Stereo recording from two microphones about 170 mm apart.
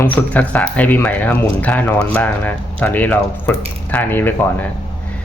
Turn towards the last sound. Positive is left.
turn(degrees=10)  # may be behind; listen again after turning